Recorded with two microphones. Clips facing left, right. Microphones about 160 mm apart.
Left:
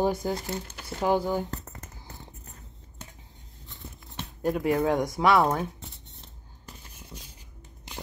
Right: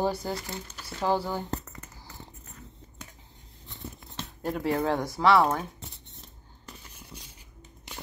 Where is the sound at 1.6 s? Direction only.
45° left (ahead or behind).